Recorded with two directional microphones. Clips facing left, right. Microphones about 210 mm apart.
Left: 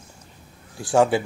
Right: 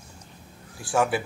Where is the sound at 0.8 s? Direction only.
25° left (ahead or behind).